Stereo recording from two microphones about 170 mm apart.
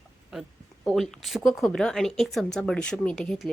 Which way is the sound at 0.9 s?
Centre (ahead or behind).